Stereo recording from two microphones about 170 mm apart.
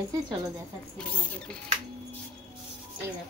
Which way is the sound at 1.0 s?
5° left (ahead or behind).